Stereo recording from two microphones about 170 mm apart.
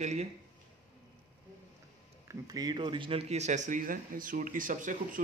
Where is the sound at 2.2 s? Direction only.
20° right (ahead or behind); by 5.2 s 50° right (ahead or behind).